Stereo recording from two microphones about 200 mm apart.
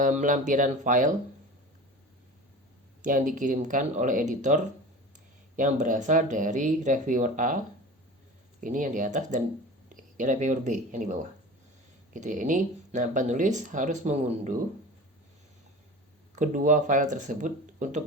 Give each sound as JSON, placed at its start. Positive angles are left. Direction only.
{"t": 0.0, "sound": "speech", "side_deg": -40}
{"t": 3.0, "sound": "speech", "side_deg": -40}
{"t": 8.6, "sound": "speech", "side_deg": -40}
{"t": 16.3, "sound": "speech", "side_deg": -40}